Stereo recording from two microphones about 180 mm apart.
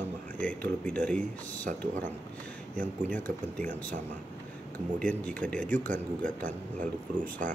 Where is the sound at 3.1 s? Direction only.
10° left (ahead or behind).